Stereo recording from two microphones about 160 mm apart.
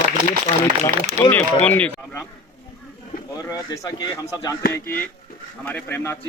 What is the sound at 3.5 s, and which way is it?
Speech, 25° left (ahead or behind).